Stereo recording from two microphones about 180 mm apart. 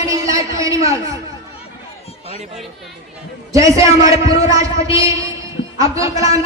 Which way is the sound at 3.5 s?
20° right (ahead or behind).